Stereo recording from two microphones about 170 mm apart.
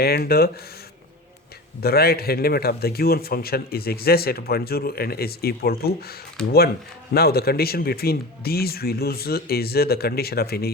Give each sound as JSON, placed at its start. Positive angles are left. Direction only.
{"t": 0.0, "sound": "a man's voice", "side_deg": 65}
{"t": 1.8, "sound": "a man's voice", "side_deg": 65}
{"t": 7.1, "sound": "a man's voice", "side_deg": 65}